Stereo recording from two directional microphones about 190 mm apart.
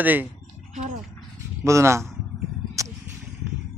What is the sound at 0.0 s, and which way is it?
Speech, 10° right (ahead or behind).